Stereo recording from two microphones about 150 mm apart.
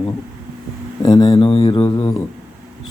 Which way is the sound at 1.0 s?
30° left (ahead or behind).